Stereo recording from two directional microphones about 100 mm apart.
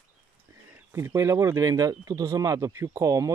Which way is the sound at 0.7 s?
25° right (ahead or behind).